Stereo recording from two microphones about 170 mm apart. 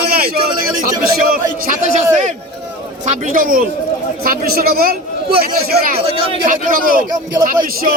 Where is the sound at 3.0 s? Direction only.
50° right (ahead or behind).